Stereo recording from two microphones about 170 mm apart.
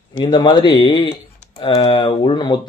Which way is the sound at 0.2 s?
30° left (ahead or behind).